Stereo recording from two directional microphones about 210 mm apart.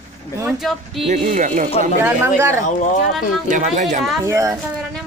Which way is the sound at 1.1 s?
35° right (ahead or behind).